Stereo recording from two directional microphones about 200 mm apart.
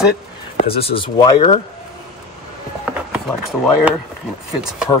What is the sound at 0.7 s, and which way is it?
Speech, 30° left (ahead or behind).